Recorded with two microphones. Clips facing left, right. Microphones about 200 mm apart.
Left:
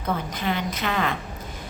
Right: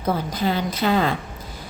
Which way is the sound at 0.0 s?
35° right (ahead or behind).